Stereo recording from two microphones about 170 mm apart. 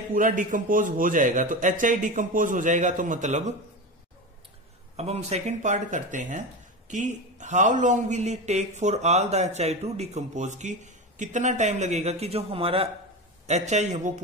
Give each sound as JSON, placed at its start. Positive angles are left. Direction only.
{"t": 0.1, "sound": "speech", "side_deg": -50}
{"t": 4.9, "sound": "speech", "side_deg": -40}